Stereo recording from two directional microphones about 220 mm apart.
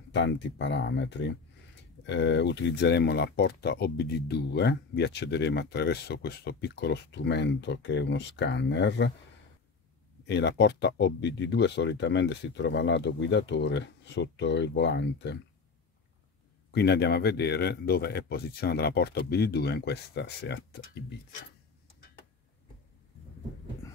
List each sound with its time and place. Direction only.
0.1 s speech: 55° left (ahead or behind)
10.2 s speech: 50° left (ahead or behind)
16.7 s speech: 50° left (ahead or behind)